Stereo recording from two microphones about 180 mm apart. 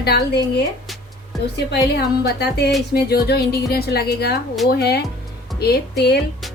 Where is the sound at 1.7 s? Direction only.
65° left (ahead or behind).